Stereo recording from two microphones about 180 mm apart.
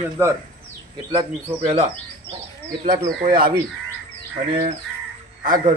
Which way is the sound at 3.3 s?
50° right (ahead or behind).